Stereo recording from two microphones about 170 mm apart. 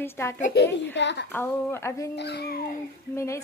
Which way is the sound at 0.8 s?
90° left.